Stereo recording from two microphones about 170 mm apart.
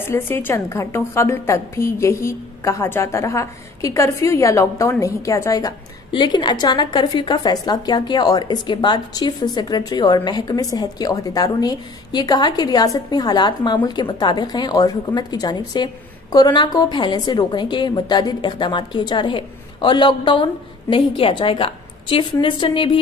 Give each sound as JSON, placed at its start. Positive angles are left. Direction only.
{"t": 0.0, "sound": "a woman's voice", "side_deg": 15}